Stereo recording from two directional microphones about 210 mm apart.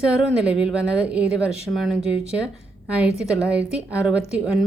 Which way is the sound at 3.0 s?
5° right (ahead or behind).